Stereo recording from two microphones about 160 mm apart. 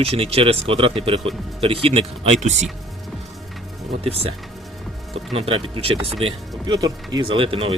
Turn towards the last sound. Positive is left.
turn(degrees=-35)  # may be behind; listen again after turning